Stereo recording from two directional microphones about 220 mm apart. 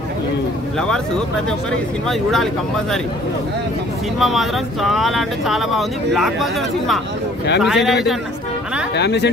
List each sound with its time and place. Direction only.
0.7 s speech: 5° left (ahead or behind)
4.2 s speech: centre (ahead or behind)
8.9 s speech: 50° left (ahead or behind)